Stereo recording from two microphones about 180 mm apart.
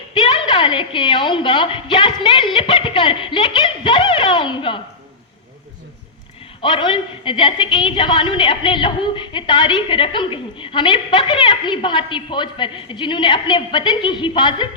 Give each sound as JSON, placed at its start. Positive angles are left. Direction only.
{"t": 0.1, "sound": "a woman's voice", "side_deg": 25}
{"t": 6.6, "sound": "a woman's voice", "side_deg": 30}